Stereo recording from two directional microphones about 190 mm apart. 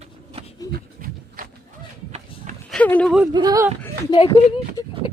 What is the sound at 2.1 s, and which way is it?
Run, 35° right (ahead or behind).